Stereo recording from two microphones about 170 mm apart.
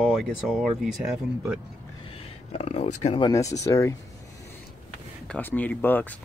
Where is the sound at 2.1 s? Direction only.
35° left (ahead or behind).